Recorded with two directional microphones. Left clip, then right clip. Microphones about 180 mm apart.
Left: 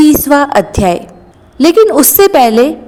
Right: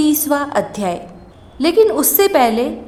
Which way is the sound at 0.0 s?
30° left (ahead or behind).